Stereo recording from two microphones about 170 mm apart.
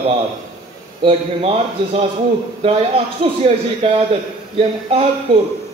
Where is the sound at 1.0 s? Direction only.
35° right (ahead or behind).